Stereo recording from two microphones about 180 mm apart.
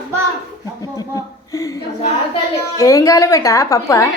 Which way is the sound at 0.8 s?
20° left (ahead or behind).